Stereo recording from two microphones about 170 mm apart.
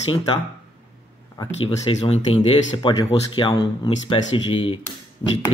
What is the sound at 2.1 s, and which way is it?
Speech, 35° left (ahead or behind).